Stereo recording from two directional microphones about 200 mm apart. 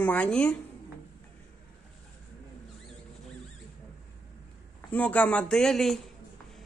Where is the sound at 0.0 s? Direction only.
5° left (ahead or behind).